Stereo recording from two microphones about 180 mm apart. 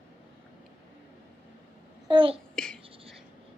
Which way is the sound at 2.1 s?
30° right (ahead or behind).